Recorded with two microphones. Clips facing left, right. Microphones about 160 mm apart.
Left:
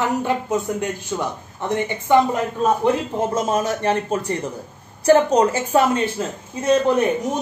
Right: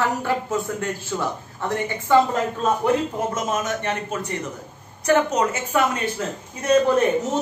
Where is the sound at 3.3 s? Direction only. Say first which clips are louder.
Left 4 dB; 30° left (ahead or behind).